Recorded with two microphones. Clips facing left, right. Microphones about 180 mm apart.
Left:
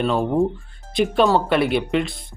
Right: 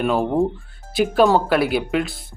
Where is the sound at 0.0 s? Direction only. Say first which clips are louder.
Even; 5° right (ahead or behind).